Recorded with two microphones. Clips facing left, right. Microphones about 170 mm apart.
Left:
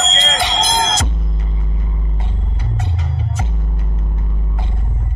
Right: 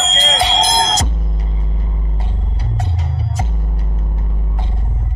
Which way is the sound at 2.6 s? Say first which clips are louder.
Right 1 dB; 35° right (ahead or behind).